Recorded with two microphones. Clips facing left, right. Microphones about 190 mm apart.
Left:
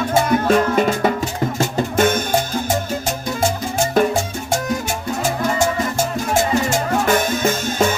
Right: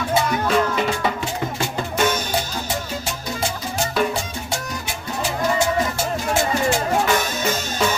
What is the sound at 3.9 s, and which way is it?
Music, 45° left (ahead or behind).